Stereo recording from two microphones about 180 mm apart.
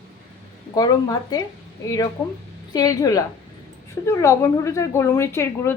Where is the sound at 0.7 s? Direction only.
20° left (ahead or behind).